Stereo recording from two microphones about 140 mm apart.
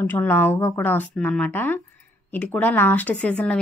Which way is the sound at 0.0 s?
15° left (ahead or behind).